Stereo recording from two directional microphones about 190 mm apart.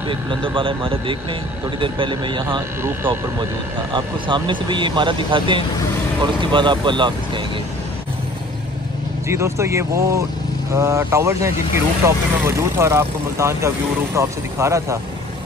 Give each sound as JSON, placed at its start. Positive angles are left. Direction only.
{"t": 0.1, "sound": "speech", "side_deg": -25}
{"t": 3.9, "sound": "speech", "side_deg": -25}
{"t": 9.3, "sound": "speech", "side_deg": -15}